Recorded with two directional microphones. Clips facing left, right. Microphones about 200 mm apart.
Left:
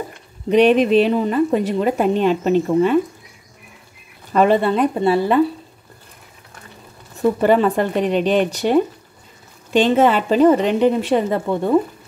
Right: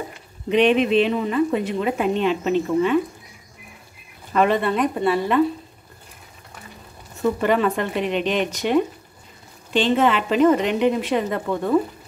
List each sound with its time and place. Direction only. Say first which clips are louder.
0.5 s a woman's voice: left 4 dB; 40° left (ahead or behind)
4.3 s a woman's voice: left 4 dB; 35° left (ahead or behind)
7.4 s a woman's voice: left 6 dB; 35° left (ahead or behind)
9.7 s a woman's voice: left 4 dB; 45° left (ahead or behind); by 11.7 s 30° left (ahead or behind)